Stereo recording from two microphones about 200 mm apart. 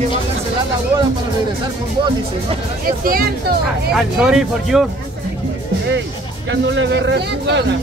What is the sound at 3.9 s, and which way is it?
Speech, 5° right (ahead or behind).